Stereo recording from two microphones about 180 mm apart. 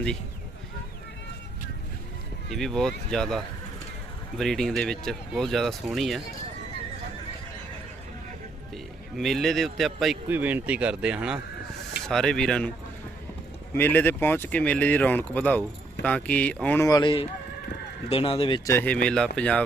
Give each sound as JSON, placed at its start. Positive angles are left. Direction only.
{"t": 2.5, "sound": "speech", "side_deg": 0}
{"t": 8.7, "sound": "a man's voice", "side_deg": 0}
{"t": 13.7, "sound": "speech", "side_deg": 10}
{"t": 18.7, "sound": "speech", "side_deg": 10}